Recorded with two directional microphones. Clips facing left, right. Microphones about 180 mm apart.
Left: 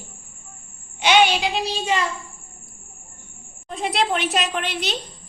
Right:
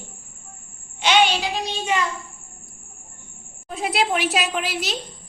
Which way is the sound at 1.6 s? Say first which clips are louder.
Left 1 dB; 35° left (ahead or behind).